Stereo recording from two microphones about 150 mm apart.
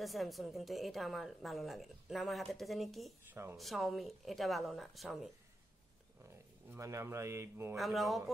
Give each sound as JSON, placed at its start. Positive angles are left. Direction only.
{"t": 0.0, "sound": "a woman's voice", "side_deg": 0}
{"t": 6.3, "sound": "speech", "side_deg": -20}
{"t": 7.7, "sound": "a woman's voice", "side_deg": 0}